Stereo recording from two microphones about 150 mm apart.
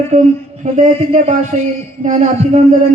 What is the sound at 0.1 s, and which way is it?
A man's voice, 60° right (ahead or behind).